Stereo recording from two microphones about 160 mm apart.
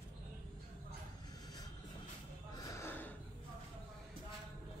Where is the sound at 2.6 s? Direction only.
15° left (ahead or behind).